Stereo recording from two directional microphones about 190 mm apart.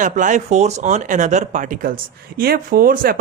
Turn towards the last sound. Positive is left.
turn(degrees=-50)  # may be behind; listen again after turning